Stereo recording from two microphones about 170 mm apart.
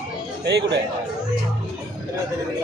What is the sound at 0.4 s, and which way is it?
Speech, 80° right.